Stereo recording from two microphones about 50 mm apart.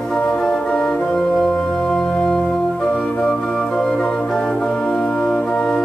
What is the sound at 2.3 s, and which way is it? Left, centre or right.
Organ, centre.